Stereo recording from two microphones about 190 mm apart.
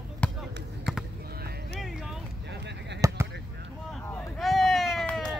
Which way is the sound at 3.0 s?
15° right (ahead or behind).